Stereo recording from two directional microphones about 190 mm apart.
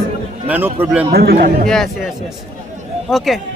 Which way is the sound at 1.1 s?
55° right (ahead or behind).